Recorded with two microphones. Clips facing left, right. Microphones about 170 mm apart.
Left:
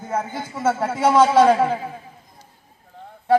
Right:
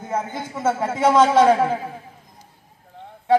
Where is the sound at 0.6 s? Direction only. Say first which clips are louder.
Even; centre (ahead or behind).